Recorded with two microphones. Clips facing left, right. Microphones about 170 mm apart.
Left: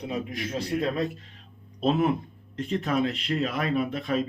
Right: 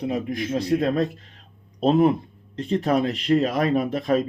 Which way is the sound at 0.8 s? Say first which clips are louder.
Right 5 dB; 45° right (ahead or behind).